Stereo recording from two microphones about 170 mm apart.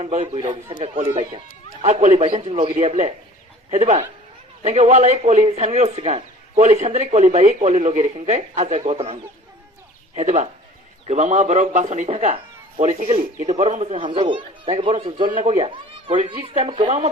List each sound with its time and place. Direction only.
0.0 s speech: 40° right (ahead or behind)
1.8 s speech: 40° right (ahead or behind)
10.2 s speech: 40° right (ahead or behind)
13.0 s speech: 50° right (ahead or behind)
13.5 s speech: 40° right (ahead or behind)